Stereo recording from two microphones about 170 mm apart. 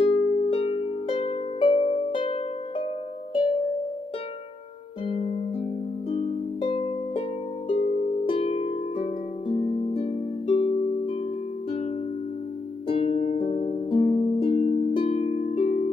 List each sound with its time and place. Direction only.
0.0 s harp: 30° left (ahead or behind)
5.0 s harp: 35° left (ahead or behind)
12.8 s music: 35° left (ahead or behind)
14.0 s harp: 35° left (ahead or behind)